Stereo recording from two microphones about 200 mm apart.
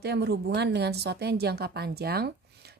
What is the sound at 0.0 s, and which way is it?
A woman's voice, 55° right (ahead or behind).